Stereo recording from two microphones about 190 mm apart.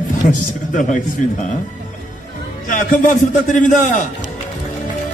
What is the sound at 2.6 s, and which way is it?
A man's voice, 45° left (ahead or behind).